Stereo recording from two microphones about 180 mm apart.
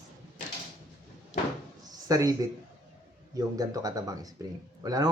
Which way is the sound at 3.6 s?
20° right (ahead or behind).